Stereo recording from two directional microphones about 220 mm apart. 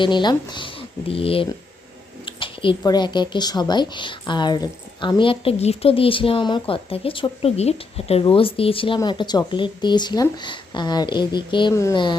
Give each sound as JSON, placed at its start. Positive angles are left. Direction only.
{"t": 0.0, "sound": "speech", "side_deg": 20}